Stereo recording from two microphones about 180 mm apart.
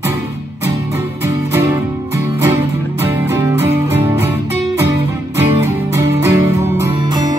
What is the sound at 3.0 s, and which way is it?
Music, 15° right (ahead or behind).